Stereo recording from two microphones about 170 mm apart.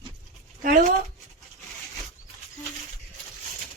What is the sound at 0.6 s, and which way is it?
Speech, 50° right (ahead or behind).